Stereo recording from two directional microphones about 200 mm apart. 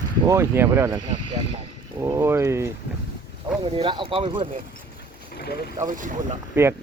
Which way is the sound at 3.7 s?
25° right (ahead or behind).